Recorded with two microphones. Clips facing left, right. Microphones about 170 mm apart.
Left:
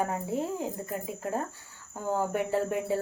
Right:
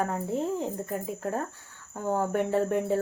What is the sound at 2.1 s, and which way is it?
Cricket, 5° left (ahead or behind).